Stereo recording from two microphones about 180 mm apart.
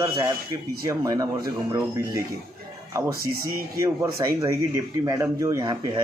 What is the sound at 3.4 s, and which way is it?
A man's voice, 15° right (ahead or behind).